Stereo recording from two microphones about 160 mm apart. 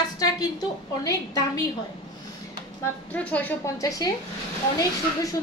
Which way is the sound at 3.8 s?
20° left (ahead or behind).